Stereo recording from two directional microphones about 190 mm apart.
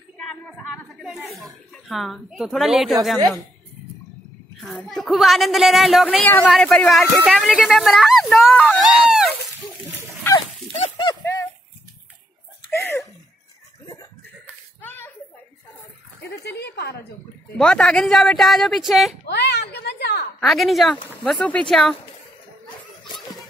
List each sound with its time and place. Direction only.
0.2 s a sound: 5° left (ahead or behind)
4.6 s a woman's voice: centre (ahead or behind)
10.3 s dog: 15° left (ahead or behind)
10.8 s a sound: 25° left (ahead or behind)
12.7 s laughter: 10° left (ahead or behind)
14.8 s a sound: 10° left (ahead or behind)
16.2 s speech: 60° left (ahead or behind)
17.6 s a woman's voice: 5° left (ahead or behind)
19.2 s a woman's voice: 60° left (ahead or behind)
20.3 s a woman's voice: centre (ahead or behind)